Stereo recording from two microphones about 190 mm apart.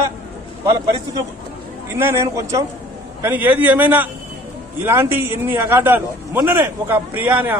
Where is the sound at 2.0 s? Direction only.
15° right (ahead or behind).